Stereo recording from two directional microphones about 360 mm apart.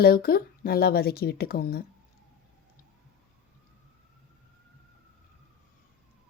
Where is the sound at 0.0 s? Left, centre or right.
Left.